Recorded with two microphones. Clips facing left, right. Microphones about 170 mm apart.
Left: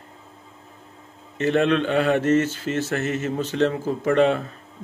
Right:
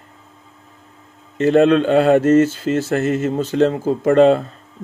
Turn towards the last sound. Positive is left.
turn(degrees=-35)  # may be behind; listen again after turning